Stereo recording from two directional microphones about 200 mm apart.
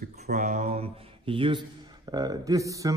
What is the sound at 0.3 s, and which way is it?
Speech, 35° right (ahead or behind).